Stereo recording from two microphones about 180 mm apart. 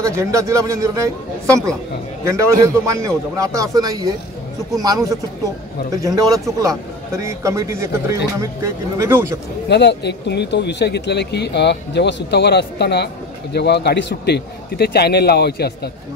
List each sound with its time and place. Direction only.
0.0 s speech: 15° right (ahead or behind)
9.7 s speech: 70° left (ahead or behind)